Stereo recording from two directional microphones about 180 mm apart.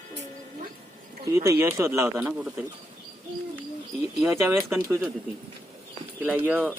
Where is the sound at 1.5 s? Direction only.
15° right (ahead or behind).